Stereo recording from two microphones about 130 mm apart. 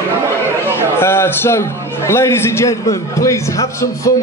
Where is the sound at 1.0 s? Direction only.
20° left (ahead or behind).